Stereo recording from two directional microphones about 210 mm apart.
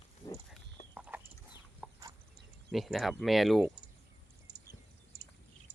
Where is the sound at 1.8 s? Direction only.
5° right (ahead or behind).